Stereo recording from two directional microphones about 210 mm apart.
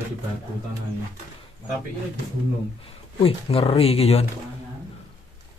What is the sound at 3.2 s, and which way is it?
Speech, 25° left (ahead or behind).